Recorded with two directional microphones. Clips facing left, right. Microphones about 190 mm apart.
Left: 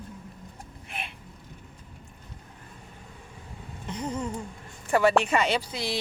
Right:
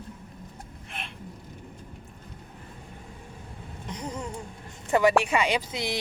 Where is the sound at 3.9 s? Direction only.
10° right (ahead or behind).